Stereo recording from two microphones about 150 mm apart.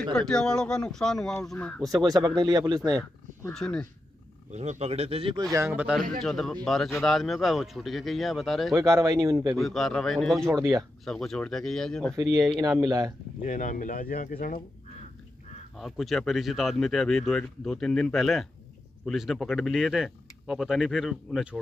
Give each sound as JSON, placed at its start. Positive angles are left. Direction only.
{"t": 0.1, "sound": "speech", "side_deg": 5}
{"t": 2.0, "sound": "speech", "side_deg": -25}
{"t": 3.5, "sound": "speech", "side_deg": 5}
{"t": 4.5, "sound": "a man's voice", "side_deg": -50}
{"t": 5.4, "sound": "speech", "side_deg": -20}
{"t": 6.2, "sound": "speech", "side_deg": 0}
{"t": 8.7, "sound": "speech", "side_deg": -20}
{"t": 9.6, "sound": "speech", "side_deg": 0}
{"t": 12.7, "sound": "speech", "side_deg": -20}
{"t": 13.4, "sound": "speech", "side_deg": 60}
{"t": 15.8, "sound": "speech", "side_deg": 0}